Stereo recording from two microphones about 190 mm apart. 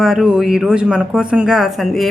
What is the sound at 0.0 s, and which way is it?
Speech, 5° right (ahead or behind).